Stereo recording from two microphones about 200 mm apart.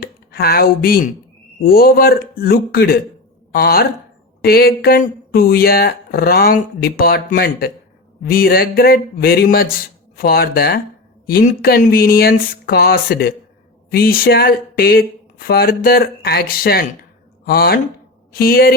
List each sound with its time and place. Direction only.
0.0 s speech: 50° left (ahead or behind)